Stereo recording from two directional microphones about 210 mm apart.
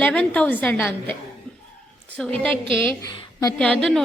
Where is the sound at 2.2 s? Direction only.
5° left (ahead or behind).